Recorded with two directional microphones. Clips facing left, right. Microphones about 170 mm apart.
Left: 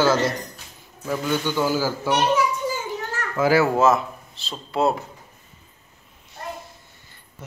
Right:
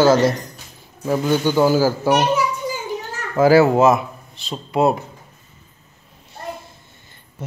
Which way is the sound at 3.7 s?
15° right (ahead or behind).